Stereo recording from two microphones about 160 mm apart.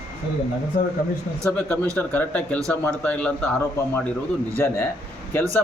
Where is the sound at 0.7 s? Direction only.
65° left (ahead or behind).